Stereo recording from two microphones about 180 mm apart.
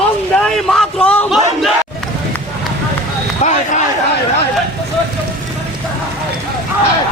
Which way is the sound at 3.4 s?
40° left (ahead or behind).